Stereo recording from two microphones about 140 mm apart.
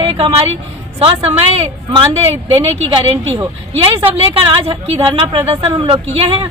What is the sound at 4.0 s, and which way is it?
A woman's voice, 40° right (ahead or behind).